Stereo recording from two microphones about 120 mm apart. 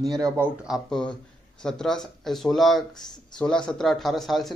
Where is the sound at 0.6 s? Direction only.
Centre (ahead or behind).